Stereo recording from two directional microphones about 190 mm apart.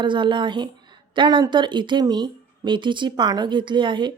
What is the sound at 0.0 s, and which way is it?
Speech, 25° right (ahead or behind).